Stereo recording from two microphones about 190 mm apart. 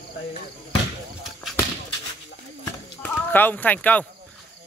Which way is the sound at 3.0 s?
10° left (ahead or behind).